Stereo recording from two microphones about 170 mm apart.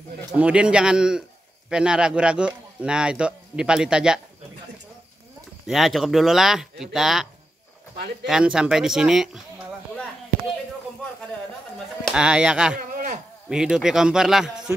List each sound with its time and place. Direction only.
0.4 s speech: 5° right (ahead or behind)
5.7 s speech: centre (ahead or behind)
8.3 s speech: 5° right (ahead or behind)
12.0 s speech: 5° right (ahead or behind)
12.7 s a sound: 50° right (ahead or behind)
13.5 s speech: 5° right (ahead or behind)